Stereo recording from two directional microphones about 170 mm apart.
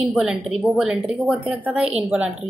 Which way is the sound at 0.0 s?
5° right (ahead or behind).